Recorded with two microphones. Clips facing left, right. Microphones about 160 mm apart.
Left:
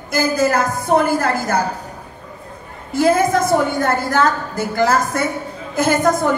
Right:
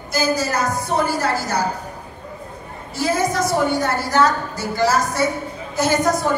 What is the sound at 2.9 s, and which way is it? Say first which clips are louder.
A woman's voice: left 6 dB; 55° left (ahead or behind).